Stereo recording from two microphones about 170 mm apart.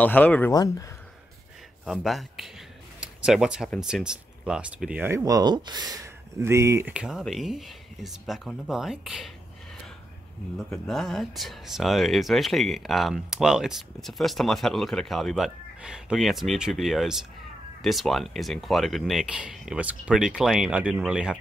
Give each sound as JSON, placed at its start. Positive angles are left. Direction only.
{"t": 0.0, "sound": "speech", "side_deg": 10}
{"t": 0.5, "sound": "speech", "side_deg": 20}
{"t": 1.9, "sound": "speech", "side_deg": 0}
{"t": 3.0, "sound": "a sound", "side_deg": -5}
{"t": 3.8, "sound": "speech", "side_deg": -5}
{"t": 6.9, "sound": "speech", "side_deg": -5}
{"t": 10.7, "sound": "speech", "side_deg": 0}